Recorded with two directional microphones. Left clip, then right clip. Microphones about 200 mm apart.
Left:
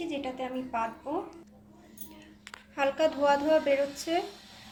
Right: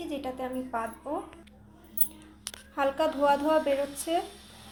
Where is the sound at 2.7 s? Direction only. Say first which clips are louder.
Even; 20° right (ahead or behind).